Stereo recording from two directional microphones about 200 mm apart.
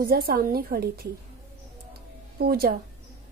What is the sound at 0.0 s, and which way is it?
A woman's voice, 45° right (ahead or behind).